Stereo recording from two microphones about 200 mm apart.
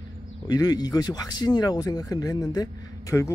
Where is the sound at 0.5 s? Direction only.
20° left (ahead or behind).